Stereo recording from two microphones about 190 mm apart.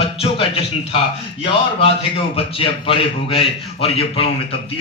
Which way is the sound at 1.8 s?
30° left (ahead or behind).